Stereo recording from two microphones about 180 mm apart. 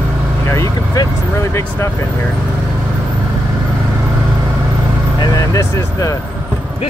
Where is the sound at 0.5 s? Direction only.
15° left (ahead or behind).